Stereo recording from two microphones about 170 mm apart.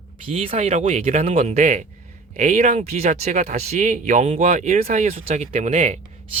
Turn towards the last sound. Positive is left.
turn(degrees=-40)  # may be behind; listen again after turning